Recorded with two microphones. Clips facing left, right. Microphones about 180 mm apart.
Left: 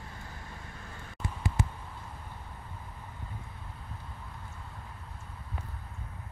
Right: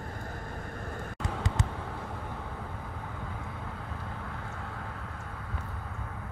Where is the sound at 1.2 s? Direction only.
80° right.